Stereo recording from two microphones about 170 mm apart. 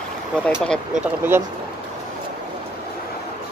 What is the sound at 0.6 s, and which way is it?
Speech, 5° right (ahead or behind).